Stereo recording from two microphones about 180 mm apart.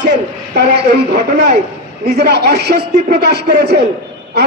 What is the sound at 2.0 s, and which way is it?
A man's voice, 65° right (ahead or behind).